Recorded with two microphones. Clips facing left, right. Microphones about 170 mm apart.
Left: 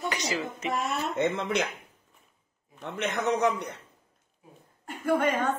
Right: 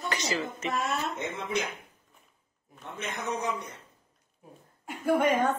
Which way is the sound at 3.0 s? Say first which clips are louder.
Left 7 dB; 80° left.